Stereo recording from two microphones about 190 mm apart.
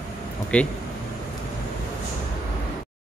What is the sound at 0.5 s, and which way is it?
Speech, 5° left (ahead or behind).